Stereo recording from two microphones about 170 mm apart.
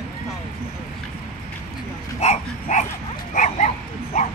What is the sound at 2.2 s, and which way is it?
Dog, 40° left (ahead or behind).